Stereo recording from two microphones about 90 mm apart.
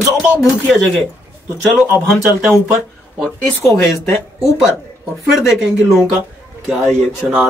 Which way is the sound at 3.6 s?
35° left (ahead or behind).